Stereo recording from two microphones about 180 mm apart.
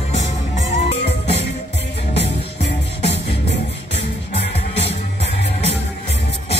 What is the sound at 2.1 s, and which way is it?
Music, 70° left (ahead or behind).